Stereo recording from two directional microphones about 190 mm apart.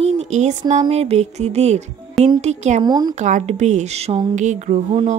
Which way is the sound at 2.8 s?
20° right (ahead or behind).